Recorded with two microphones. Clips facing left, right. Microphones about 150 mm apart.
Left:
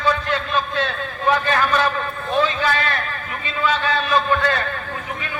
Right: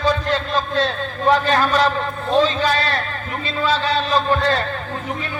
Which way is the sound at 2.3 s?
35° right (ahead or behind).